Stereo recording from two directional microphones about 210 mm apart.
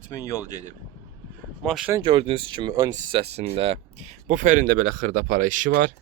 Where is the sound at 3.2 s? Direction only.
30° right (ahead or behind).